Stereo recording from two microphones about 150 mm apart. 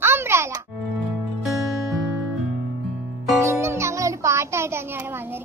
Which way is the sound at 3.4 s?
15° right (ahead or behind).